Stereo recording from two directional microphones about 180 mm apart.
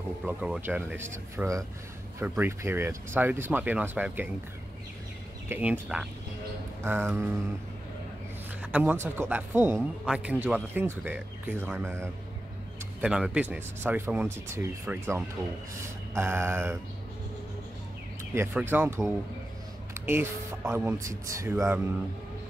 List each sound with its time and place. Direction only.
0.3 s speech: 10° right (ahead or behind)
5.5 s speech: 10° right (ahead or behind)
8.7 s speech: 10° right (ahead or behind)
18.3 s speech: 10° right (ahead or behind)